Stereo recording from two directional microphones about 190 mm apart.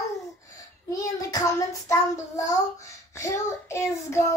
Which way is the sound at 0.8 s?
20° left (ahead or behind).